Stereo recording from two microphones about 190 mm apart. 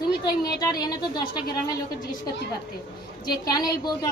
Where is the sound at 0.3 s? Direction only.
20° left (ahead or behind).